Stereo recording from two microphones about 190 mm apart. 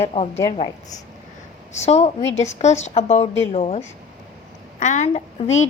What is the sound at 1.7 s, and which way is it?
A woman's voice, 35° left (ahead or behind).